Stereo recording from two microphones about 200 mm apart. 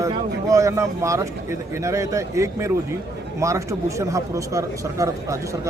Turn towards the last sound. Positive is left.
turn(degrees=-15)  # may be behind; listen again after turning